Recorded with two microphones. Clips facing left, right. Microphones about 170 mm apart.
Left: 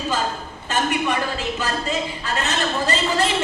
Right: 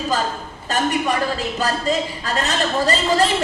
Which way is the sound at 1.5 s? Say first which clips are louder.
Right 4 dB; 35° right (ahead or behind).